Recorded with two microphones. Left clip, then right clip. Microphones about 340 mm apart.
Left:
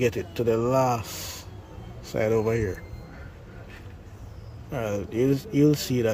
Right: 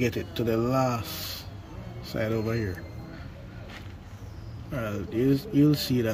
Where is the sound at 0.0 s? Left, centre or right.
Centre.